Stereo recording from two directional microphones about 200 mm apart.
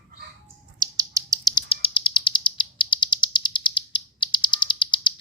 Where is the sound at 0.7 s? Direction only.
15° right (ahead or behind).